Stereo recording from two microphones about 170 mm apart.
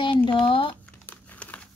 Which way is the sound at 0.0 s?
30° left (ahead or behind).